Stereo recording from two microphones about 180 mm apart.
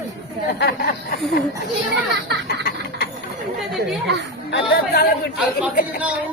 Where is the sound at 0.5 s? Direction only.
60° left (ahead or behind).